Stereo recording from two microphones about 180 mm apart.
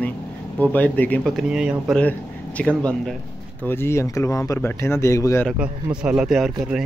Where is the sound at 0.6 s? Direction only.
10° left (ahead or behind).